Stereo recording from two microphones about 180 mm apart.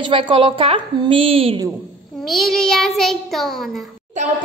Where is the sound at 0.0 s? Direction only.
30° right (ahead or behind).